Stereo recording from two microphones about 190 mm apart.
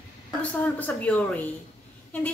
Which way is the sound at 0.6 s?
10° left (ahead or behind).